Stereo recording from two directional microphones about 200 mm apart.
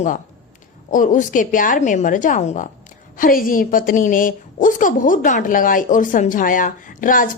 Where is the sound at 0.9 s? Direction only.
40° left (ahead or behind).